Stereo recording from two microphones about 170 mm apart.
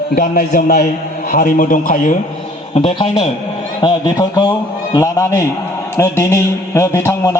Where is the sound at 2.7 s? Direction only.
35° left (ahead or behind).